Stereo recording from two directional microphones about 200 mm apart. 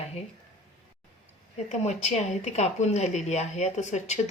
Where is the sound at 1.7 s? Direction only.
35° left (ahead or behind).